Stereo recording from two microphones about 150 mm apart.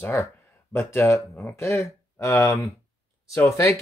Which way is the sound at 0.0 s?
20° left (ahead or behind).